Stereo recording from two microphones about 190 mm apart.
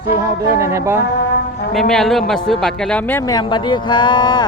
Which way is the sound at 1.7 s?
Centre (ahead or behind).